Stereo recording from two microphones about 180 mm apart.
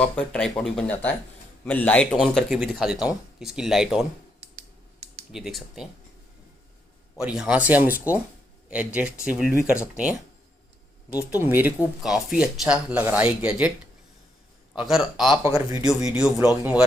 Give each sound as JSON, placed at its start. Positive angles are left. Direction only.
{"t": 0.0, "sound": "a man's voice", "side_deg": 5}
{"t": 2.1, "sound": "speech", "side_deg": -5}
{"t": 5.3, "sound": "speech", "side_deg": 0}
{"t": 7.2, "sound": "speech", "side_deg": -5}
{"t": 11.1, "sound": "speech", "side_deg": -10}
{"t": 14.8, "sound": "speech", "side_deg": 0}
{"t": 15.4, "sound": "speech", "side_deg": -20}
{"t": 16.1, "sound": "speech", "side_deg": -5}